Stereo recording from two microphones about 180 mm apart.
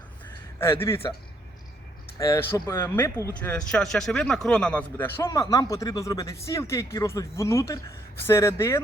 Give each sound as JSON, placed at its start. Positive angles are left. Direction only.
{"t": 0.6, "sound": "speech", "side_deg": 15}
{"t": 2.1, "sound": "speech", "side_deg": 15}